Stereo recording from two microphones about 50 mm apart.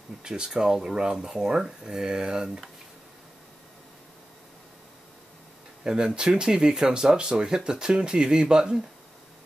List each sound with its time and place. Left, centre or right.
0.2 s speech: centre
5.9 s speech: centre